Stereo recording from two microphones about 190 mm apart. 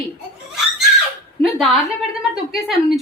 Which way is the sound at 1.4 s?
Centre (ahead or behind).